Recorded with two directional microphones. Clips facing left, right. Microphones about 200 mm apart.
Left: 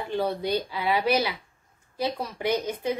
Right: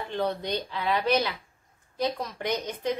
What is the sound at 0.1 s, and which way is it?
A woman's voice, 10° left (ahead or behind).